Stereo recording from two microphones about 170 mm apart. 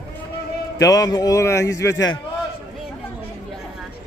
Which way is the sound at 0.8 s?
20° left (ahead or behind).